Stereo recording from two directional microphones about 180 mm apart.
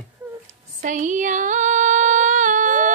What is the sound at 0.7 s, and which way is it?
Female singing, 45° right (ahead or behind).